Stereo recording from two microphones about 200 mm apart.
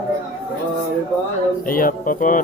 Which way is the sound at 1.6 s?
45° left (ahead or behind).